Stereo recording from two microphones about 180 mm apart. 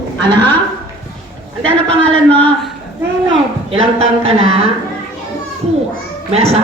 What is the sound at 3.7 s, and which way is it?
Speech, 30° right (ahead or behind).